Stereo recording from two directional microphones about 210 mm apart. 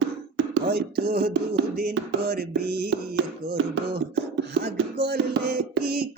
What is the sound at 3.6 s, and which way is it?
Speech, 65° right (ahead or behind).